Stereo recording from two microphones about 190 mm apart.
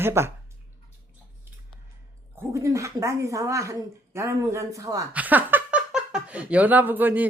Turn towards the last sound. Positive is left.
turn(degrees=-10)  # may be behind; listen again after turning